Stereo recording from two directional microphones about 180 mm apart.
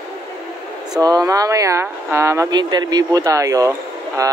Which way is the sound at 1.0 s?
20° right (ahead or behind).